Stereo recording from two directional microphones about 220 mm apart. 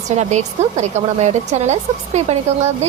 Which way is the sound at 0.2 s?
30° right (ahead or behind).